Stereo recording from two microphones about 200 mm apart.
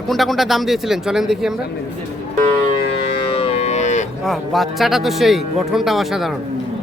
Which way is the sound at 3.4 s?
30° left (ahead or behind).